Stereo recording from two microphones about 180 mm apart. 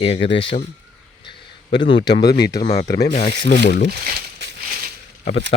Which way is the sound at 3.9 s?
60° right (ahead or behind).